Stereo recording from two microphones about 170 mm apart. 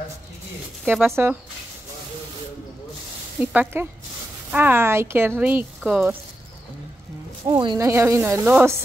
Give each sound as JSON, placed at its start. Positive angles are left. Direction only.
{"t": 1.0, "sound": "speech", "side_deg": -15}
{"t": 3.3, "sound": "speech", "side_deg": -10}
{"t": 7.4, "sound": "speech", "side_deg": -25}